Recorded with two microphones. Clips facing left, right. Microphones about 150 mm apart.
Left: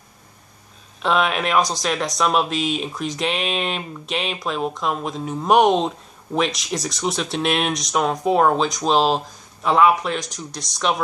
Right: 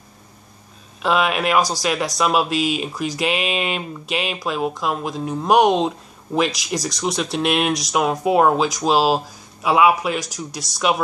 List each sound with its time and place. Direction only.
1.0 s speech: 5° right (ahead or behind)